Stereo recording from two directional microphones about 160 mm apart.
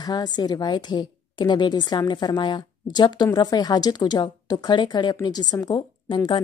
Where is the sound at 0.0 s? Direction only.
25° left (ahead or behind).